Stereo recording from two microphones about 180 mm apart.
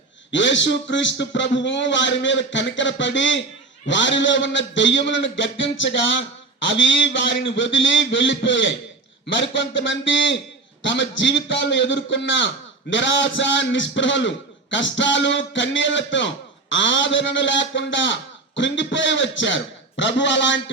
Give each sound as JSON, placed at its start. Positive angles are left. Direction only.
{"t": 0.3, "sound": "a man's voice", "side_deg": 90}